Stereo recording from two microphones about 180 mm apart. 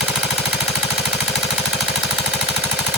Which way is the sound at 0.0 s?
Centre (ahead or behind).